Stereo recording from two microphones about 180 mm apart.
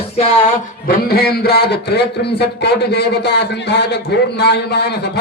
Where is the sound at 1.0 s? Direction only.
60° left (ahead or behind).